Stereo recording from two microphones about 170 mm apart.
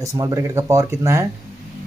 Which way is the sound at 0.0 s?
20° right (ahead or behind).